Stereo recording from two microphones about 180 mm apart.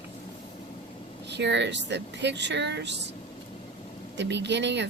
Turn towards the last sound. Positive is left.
turn(degrees=-75)  # may be behind; listen again after turning